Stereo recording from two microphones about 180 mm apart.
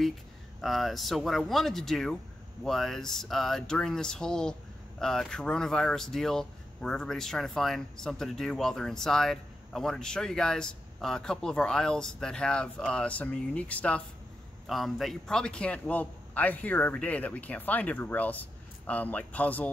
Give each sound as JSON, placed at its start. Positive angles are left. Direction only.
{"t": 0.6, "sound": "speech", "side_deg": 0}